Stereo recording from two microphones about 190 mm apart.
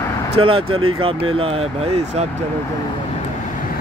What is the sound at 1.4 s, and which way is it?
Speech, 30° right (ahead or behind).